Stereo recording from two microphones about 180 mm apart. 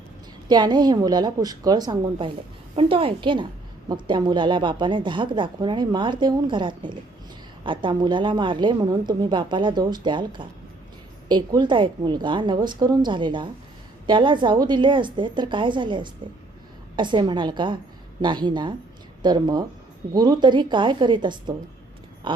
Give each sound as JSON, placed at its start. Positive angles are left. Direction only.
{"t": 0.4, "sound": "speech", "side_deg": -25}